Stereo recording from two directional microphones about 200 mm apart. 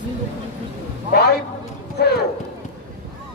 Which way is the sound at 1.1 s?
55° left (ahead or behind).